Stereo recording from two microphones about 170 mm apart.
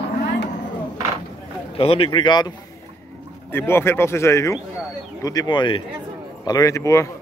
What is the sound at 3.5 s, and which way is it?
Speech, 15° left (ahead or behind).